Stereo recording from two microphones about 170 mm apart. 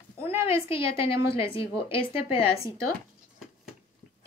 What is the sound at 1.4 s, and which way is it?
Speech, 30° left (ahead or behind).